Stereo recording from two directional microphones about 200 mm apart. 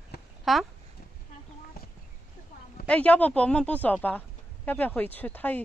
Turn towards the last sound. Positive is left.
turn(degrees=10)  # may be behind; listen again after turning